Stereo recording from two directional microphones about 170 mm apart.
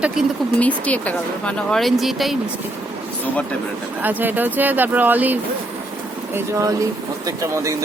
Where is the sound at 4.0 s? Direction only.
10° right (ahead or behind).